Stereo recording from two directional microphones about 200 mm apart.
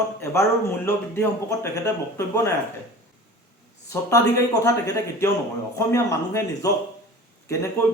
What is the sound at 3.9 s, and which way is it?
Speech, 15° left (ahead or behind).